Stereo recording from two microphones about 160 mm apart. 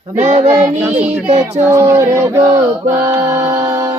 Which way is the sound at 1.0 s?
10° right (ahead or behind).